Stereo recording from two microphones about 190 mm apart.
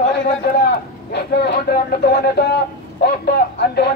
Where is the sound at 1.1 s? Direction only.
60° left (ahead or behind).